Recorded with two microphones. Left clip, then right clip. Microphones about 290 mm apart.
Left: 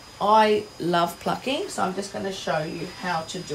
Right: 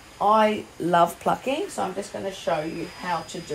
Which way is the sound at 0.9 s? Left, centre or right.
Centre.